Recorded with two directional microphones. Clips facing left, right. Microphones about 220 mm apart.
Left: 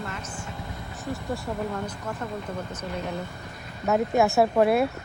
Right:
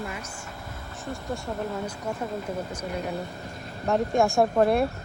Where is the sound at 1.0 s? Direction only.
Centre (ahead or behind).